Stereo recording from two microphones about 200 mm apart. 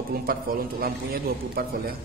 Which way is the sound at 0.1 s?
50° right (ahead or behind).